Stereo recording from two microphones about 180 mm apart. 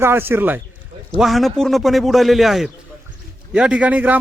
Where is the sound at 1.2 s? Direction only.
Centre (ahead or behind).